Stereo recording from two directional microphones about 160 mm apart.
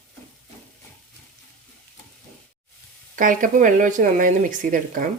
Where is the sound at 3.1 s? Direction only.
55° right (ahead or behind).